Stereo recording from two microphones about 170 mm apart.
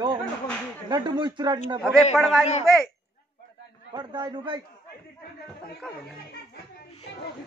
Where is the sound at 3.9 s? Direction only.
25° right (ahead or behind).